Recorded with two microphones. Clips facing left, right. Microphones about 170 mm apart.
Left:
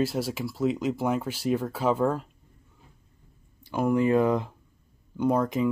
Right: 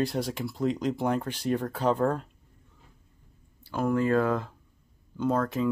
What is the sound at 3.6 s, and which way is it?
Speech, 15° left (ahead or behind).